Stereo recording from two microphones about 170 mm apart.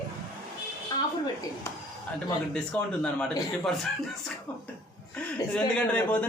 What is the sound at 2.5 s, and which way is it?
Speech, 5° left (ahead or behind).